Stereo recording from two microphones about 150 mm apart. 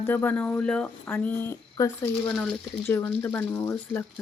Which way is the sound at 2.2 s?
5° left (ahead or behind).